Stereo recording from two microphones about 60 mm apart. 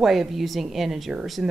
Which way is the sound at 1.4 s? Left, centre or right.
Centre.